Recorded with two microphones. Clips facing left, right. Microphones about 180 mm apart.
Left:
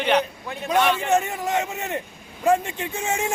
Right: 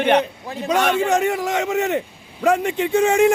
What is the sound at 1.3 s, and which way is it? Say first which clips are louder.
A man's voice: right 5 dB; 75° right (ahead or behind).